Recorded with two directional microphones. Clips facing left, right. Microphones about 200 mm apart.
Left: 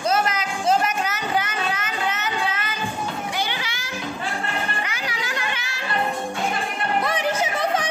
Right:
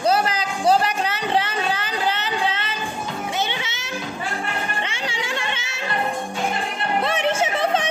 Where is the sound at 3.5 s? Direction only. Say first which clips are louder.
Right 1 dB; 25° right (ahead or behind).